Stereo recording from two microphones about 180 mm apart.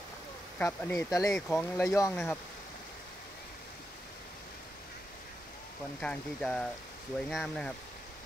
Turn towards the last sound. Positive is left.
turn(degrees=5)  # may be behind; listen again after turning